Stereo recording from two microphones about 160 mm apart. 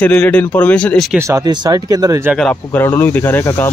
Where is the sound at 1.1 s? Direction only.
20° right (ahead or behind).